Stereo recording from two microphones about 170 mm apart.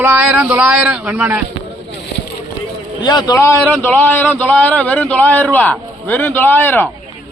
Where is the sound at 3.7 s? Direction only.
10° left (ahead or behind).